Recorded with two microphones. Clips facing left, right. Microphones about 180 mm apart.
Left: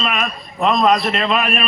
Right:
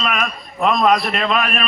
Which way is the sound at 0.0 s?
Centre (ahead or behind).